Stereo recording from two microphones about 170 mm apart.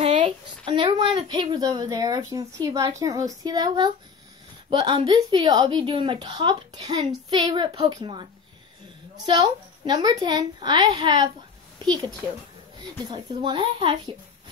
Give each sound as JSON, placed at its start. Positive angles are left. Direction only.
{"t": 0.0, "sound": "speech", "side_deg": -35}
{"t": 13.1, "sound": "speech", "side_deg": -25}